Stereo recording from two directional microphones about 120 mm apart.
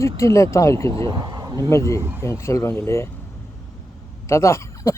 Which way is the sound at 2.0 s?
20° right (ahead or behind).